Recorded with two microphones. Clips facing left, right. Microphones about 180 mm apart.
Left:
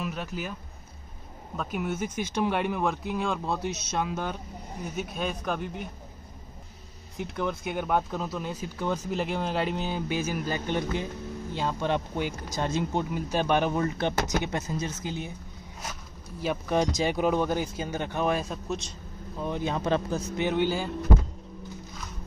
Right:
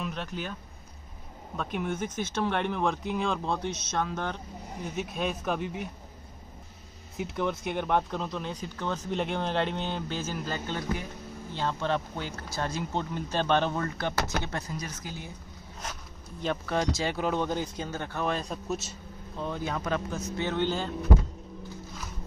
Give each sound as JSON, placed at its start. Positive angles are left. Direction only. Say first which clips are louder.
{"t": 0.0, "sound": "speech", "louder": "left 1 dB", "side_deg": 5}
{"t": 1.6, "sound": "speech", "louder": "left 1 dB", "side_deg": 5}
{"t": 7.2, "sound": "speech", "louder": "even", "side_deg": 0}
{"t": 15.8, "sound": "speech", "louder": "even", "side_deg": 5}
{"t": 18.4, "sound": "speech", "louder": "left 1 dB", "side_deg": 0}
{"t": 19.3, "sound": "speech", "louder": "left 3 dB", "side_deg": 15}
{"t": 20.3, "sound": "speech", "louder": "left 2 dB", "side_deg": 15}